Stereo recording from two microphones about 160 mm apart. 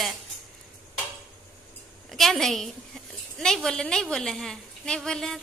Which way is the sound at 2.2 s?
Centre (ahead or behind).